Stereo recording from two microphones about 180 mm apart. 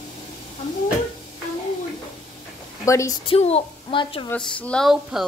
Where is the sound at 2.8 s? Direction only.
15° left (ahead or behind).